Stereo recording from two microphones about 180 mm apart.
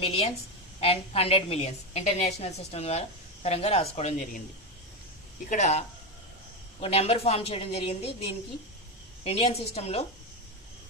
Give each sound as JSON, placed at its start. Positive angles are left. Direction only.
{"t": 0.0, "sound": "a woman's voice", "side_deg": 35}
{"t": 5.5, "sound": "a woman's voice", "side_deg": 40}